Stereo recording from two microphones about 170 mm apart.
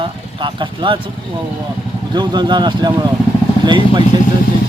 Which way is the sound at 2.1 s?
25° right (ahead or behind).